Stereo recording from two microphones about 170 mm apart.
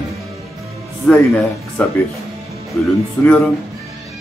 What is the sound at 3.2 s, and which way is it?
Speech, 10° left (ahead or behind).